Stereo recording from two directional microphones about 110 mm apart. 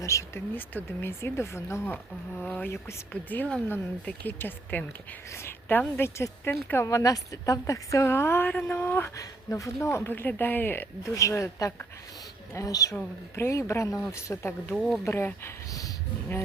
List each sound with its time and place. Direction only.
0.0 s speech: 30° left (ahead or behind)
0.5 s a woman's voice: 15° left (ahead or behind)
2.4 s a woman's voice: 10° left (ahead or behind)
9.1 s a woman's voice: 30° left (ahead or behind)
11.1 s a woman's voice: 30° left (ahead or behind)